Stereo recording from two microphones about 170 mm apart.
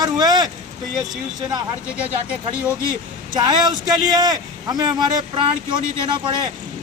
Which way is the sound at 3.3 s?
25° right (ahead or behind).